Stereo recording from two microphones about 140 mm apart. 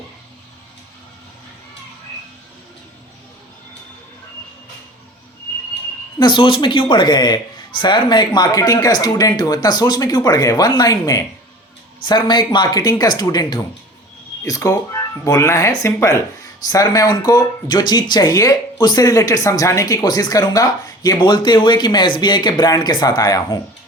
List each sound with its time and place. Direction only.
6.1 s speech: 30° left (ahead or behind)